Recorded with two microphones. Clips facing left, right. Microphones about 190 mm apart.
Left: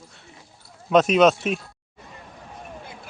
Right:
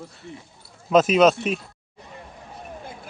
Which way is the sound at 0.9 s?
Centre (ahead or behind).